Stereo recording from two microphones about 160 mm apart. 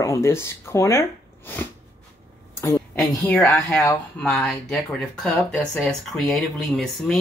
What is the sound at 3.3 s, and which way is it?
Speech, 20° left (ahead or behind).